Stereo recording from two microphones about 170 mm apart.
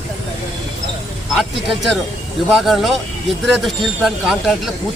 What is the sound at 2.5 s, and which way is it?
Speech, centre (ahead or behind).